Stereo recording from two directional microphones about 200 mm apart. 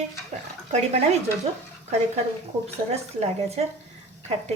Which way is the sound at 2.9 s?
30° right (ahead or behind).